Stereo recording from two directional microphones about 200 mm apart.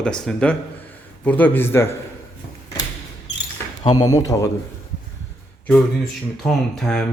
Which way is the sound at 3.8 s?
20° left (ahead or behind).